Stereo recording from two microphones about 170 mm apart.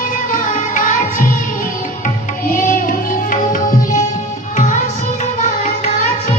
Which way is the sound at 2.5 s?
55° left (ahead or behind).